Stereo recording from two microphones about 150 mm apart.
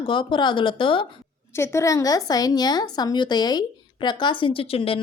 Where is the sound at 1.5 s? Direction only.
15° left (ahead or behind).